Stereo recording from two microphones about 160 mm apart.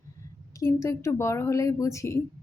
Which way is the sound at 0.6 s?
20° left (ahead or behind).